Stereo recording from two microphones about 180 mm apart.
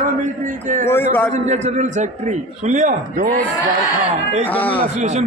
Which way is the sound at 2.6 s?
45° right (ahead or behind).